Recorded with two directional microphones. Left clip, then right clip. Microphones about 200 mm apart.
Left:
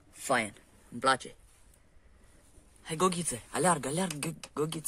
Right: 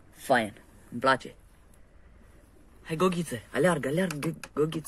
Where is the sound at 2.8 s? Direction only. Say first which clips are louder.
Right 2 dB; 20° left (ahead or behind).